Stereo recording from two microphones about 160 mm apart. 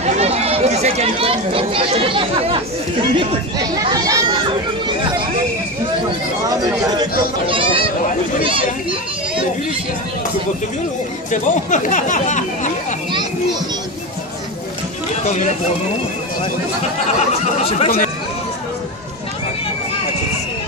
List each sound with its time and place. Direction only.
0.0 s speech: 40° right (ahead or behind); by 4.4 s 25° right (ahead or behind)
6.9 s chatter: 30° right (ahead or behind)
11.3 s speech: 55° left (ahead or behind)
17.3 s speech: 40° left (ahead or behind)